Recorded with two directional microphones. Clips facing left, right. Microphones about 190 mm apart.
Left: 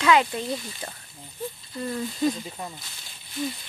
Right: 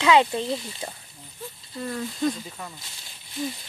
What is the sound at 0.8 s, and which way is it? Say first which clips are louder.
Speech: right 2 dB; 15° right (ahead or behind).